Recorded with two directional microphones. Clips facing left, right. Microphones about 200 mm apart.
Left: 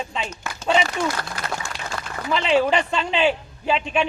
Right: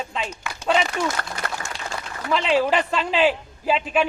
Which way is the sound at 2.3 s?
Centre (ahead or behind).